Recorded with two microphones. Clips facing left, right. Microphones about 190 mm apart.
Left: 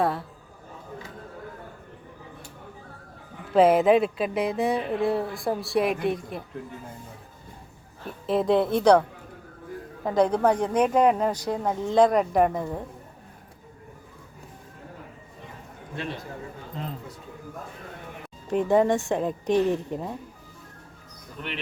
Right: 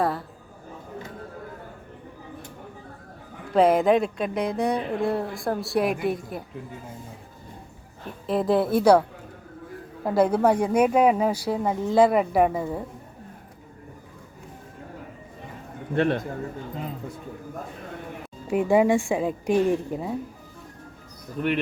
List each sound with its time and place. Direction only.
0.0 s speech: centre (ahead or behind)
3.5 s speech: 5° left (ahead or behind)
8.3 s speech: centre (ahead or behind)
16.0 s a man's voice: 60° right (ahead or behind)
18.4 s speech: 10° right (ahead or behind)